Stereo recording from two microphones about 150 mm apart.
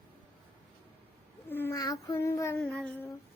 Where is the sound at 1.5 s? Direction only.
15° left (ahead or behind).